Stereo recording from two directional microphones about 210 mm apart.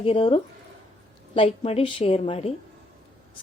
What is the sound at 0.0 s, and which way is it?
A woman's voice, 25° left (ahead or behind).